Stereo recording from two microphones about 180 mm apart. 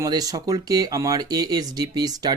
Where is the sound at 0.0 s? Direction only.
20° right (ahead or behind).